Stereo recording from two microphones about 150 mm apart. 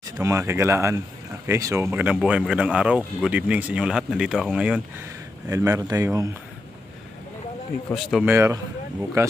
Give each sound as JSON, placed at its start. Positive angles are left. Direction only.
{"t": 0.2, "sound": "speech", "side_deg": -20}
{"t": 5.5, "sound": "speech", "side_deg": -20}
{"t": 7.9, "sound": "speech", "side_deg": 0}
{"t": 8.3, "sound": "speech", "side_deg": -15}